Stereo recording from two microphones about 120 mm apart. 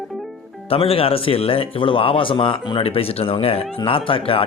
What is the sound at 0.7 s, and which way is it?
Speech, 55° left (ahead or behind).